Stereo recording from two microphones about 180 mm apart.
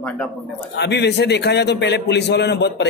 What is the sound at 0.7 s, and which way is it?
A man's voice, 70° left (ahead or behind).